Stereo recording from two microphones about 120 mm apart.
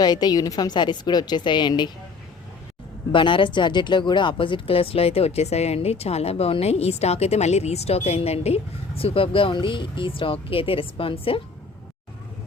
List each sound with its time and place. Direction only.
0.0 s a woman's voice: 35° left (ahead or behind)
3.1 s speech: 45° left (ahead or behind)